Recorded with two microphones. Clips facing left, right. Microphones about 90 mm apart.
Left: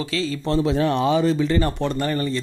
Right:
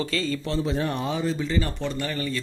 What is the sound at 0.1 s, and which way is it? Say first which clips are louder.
Speech: left 2 dB; 5° left (ahead or behind).